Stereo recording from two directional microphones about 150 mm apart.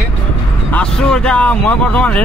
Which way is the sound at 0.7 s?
5° left (ahead or behind).